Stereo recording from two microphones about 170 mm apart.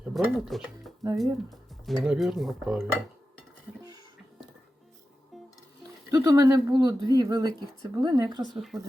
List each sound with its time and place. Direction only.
0.0 s speech: centre (ahead or behind)
6.1 s speech: 20° right (ahead or behind)